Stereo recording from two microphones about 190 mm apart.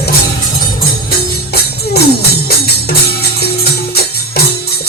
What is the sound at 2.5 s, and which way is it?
Music, 55° left (ahead or behind).